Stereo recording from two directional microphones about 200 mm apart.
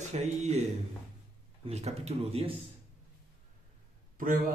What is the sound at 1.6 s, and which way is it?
Speech, 35° right (ahead or behind).